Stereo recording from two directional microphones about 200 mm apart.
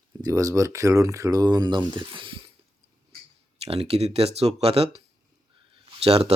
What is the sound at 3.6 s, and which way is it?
Speech, 30° right (ahead or behind).